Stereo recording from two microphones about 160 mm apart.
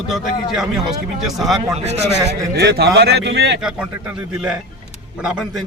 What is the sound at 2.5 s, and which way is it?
Speech, 90° right.